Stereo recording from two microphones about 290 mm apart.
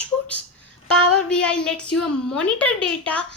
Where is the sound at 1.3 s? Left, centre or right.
Centre.